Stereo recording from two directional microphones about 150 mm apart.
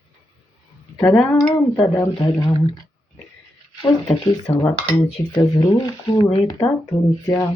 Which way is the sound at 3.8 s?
25° left (ahead or behind).